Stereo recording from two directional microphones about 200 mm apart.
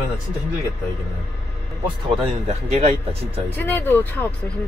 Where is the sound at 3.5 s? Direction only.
10° left (ahead or behind).